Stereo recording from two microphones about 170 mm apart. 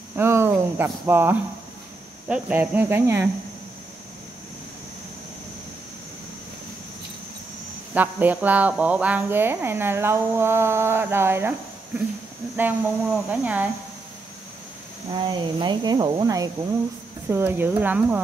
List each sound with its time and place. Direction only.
0.1 s speech: 15° right (ahead or behind)
7.9 s speech: 10° right (ahead or behind)
12.5 s speech: 10° right (ahead or behind)
15.2 s speech: 25° right (ahead or behind)
17.3 s speech: 10° right (ahead or behind)